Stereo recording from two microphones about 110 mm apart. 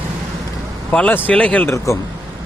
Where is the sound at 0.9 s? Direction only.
10° left (ahead or behind).